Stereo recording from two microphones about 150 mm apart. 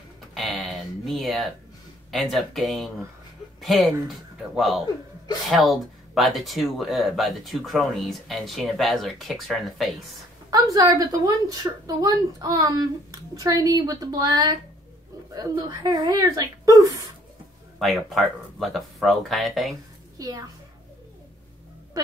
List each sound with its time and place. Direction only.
0.3 s a sound: centre (ahead or behind)
2.0 s speech: centre (ahead or behind)
10.5 s a woman's voice: 25° right (ahead or behind)
17.7 s speech: centre (ahead or behind)
20.2 s a child's voice: 25° right (ahead or behind)